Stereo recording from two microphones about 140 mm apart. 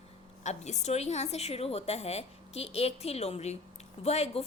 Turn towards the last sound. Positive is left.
turn(degrees=50)  # may be behind; listen again after turning